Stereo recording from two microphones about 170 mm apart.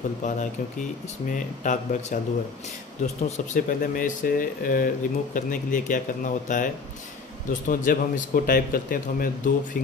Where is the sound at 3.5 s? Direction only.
55° left (ahead or behind).